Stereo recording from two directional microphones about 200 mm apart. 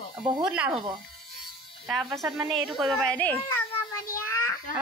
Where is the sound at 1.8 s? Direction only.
Centre (ahead or behind).